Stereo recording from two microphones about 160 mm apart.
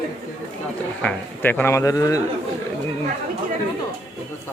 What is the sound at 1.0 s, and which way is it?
Speech, 10° left (ahead or behind).